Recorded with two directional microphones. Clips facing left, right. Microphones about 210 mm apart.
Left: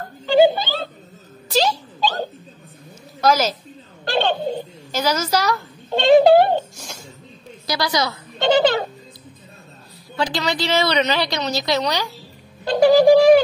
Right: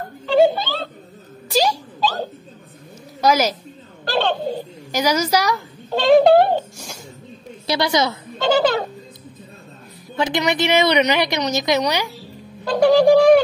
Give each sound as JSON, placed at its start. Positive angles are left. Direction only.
{"t": 0.3, "sound": "music", "side_deg": 0}
{"t": 1.5, "sound": "music", "side_deg": -10}
{"t": 3.2, "sound": "a woman's voice", "side_deg": -15}
{"t": 4.0, "sound": "speech", "side_deg": 0}
{"t": 4.9, "sound": "a woman's voice", "side_deg": -15}
{"t": 5.9, "sound": "speech", "side_deg": 0}
{"t": 7.6, "sound": "a woman's voice", "side_deg": -25}
{"t": 10.1, "sound": "a woman's voice", "side_deg": -20}
{"t": 12.6, "sound": "music", "side_deg": 0}